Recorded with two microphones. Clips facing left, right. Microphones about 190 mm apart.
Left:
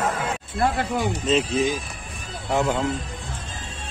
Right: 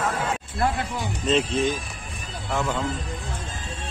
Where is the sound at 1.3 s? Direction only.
Centre (ahead or behind).